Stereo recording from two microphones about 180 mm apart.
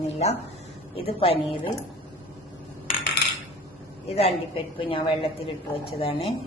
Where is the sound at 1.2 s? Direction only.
30° left (ahead or behind).